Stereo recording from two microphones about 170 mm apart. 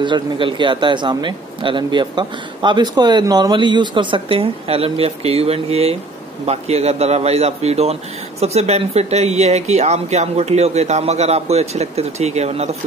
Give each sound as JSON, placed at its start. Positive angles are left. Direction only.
{"t": 0.0, "sound": "a man's voice", "side_deg": -30}